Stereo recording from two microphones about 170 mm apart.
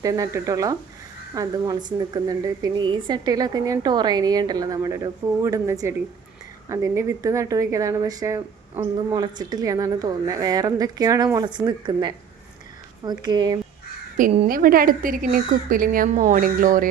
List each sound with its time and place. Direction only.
0.0 s a woman's voice: 20° right (ahead or behind)
14.4 s speech: 55° right (ahead or behind)